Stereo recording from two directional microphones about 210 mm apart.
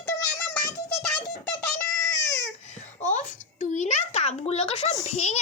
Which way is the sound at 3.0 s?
35° left (ahead or behind).